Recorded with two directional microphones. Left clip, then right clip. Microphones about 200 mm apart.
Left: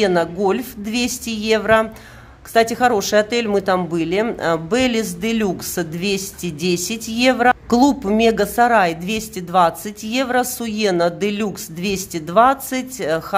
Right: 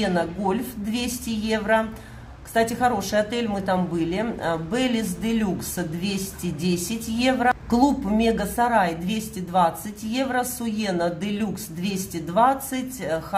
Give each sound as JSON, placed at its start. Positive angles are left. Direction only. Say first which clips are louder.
{"t": 0.0, "sound": "speech", "louder": "left 7 dB", "side_deg": 45}